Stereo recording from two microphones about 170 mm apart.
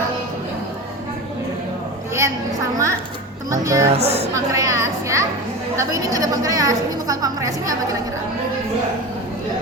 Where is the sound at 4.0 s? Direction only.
40° right (ahead or behind).